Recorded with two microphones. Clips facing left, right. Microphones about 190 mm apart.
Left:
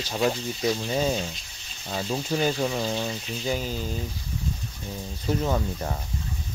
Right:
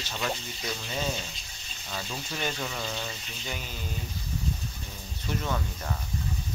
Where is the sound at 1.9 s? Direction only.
30° left (ahead or behind).